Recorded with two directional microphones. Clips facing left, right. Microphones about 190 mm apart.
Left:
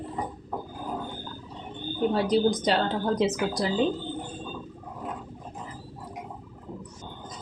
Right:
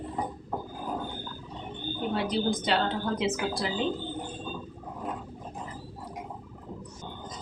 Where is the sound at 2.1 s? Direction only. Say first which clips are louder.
Left 4 dB; 40° left (ahead or behind).